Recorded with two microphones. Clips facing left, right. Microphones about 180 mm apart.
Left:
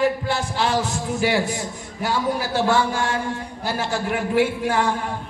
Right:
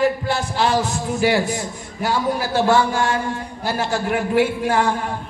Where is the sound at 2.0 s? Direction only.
45° right (ahead or behind).